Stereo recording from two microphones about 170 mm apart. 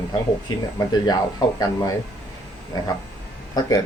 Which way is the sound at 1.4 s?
25° left (ahead or behind).